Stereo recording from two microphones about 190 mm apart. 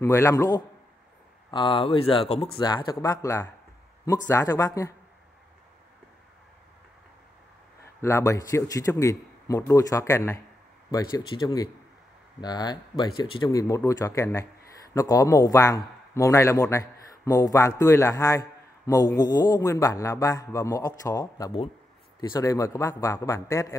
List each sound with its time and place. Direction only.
0.0 s a man's voice: 15° left (ahead or behind)
8.0 s a man's voice: 15° left (ahead or behind)